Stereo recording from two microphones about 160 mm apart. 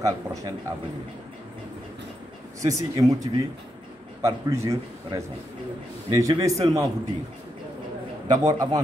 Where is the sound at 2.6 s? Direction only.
20° right (ahead or behind).